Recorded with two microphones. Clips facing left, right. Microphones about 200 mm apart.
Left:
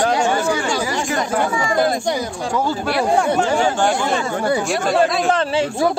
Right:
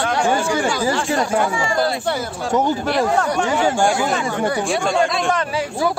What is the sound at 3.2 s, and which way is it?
Speech, 30° left (ahead or behind).